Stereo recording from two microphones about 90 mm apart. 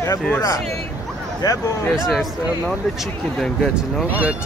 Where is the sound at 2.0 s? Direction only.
Centre (ahead or behind).